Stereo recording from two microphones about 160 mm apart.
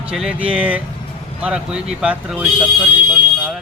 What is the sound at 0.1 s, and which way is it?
Speech, 5° right (ahead or behind).